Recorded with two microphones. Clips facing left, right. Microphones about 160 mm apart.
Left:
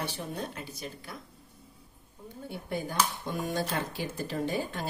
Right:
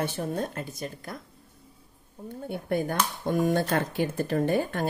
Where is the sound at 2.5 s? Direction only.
55° right (ahead or behind).